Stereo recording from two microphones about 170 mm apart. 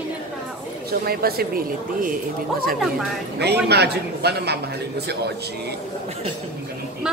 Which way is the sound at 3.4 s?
75° right (ahead or behind).